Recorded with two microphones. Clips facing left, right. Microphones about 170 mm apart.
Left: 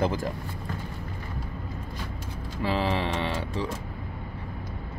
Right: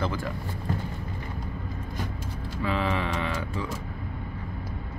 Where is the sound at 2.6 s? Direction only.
30° left (ahead or behind).